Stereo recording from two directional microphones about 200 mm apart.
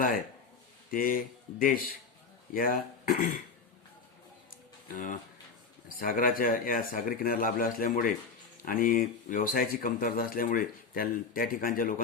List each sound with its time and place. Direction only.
0.9 s speech: 45° left (ahead or behind)
4.9 s speech: 40° left (ahead or behind)